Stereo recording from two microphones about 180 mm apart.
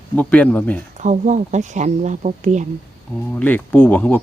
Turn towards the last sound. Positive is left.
turn(degrees=10)  # may be behind; listen again after turning